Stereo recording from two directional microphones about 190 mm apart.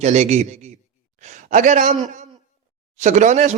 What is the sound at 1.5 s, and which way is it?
A man's voice, 40° right (ahead or behind).